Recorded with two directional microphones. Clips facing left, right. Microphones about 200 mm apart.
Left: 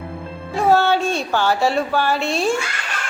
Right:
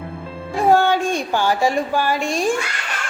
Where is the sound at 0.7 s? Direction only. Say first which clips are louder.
Even; 15° right (ahead or behind).